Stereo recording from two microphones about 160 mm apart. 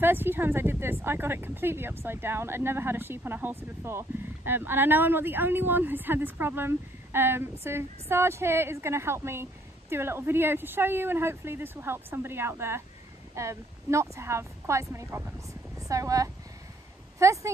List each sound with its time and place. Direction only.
0.0 s a woman's voice: 15° right (ahead or behind)